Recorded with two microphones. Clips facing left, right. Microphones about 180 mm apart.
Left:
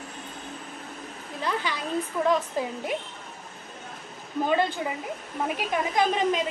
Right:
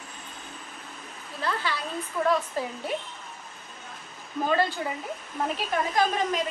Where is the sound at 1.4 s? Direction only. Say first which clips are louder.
Left 1 dB; 15° left (ahead or behind).